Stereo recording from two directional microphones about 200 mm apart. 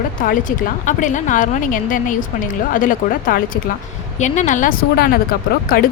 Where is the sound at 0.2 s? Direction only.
40° left (ahead or behind).